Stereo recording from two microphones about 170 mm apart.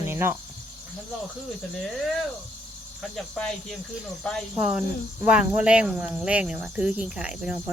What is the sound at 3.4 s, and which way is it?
Speech, 5° left (ahead or behind).